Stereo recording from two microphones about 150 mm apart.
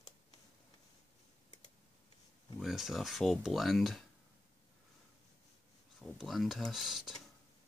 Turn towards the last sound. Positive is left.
turn(degrees=0)  # may be behind; listen again after turning